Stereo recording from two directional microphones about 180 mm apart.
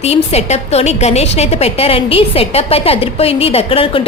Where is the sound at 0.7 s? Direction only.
35° left (ahead or behind).